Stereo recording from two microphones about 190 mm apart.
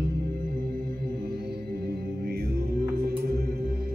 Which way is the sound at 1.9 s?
55° right (ahead or behind).